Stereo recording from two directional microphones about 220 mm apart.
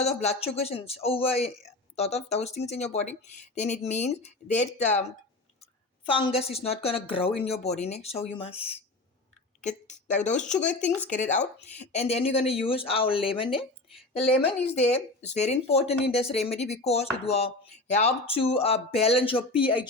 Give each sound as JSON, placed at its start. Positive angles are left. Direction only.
{"t": 0.2, "sound": "a woman's voice", "side_deg": 30}
{"t": 6.1, "sound": "a woman's voice", "side_deg": 25}
{"t": 10.9, "sound": "speech", "side_deg": 5}
{"t": 11.2, "sound": "a woman's voice", "side_deg": 35}